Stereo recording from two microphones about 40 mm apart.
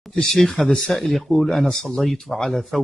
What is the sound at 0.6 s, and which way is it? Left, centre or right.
Speech, centre.